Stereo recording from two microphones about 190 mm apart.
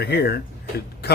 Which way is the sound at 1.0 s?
55° left (ahead or behind).